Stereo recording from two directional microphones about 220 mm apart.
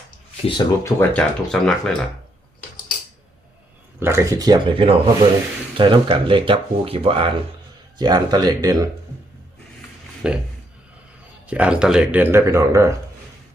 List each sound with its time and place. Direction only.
0.4 s speech: 20° left (ahead or behind)
0.9 s speech: 5° left (ahead or behind)
4.0 s speech: 10° right (ahead or behind)
10.2 s speech: 5° right (ahead or behind)
11.4 s speech: 5° right (ahead or behind)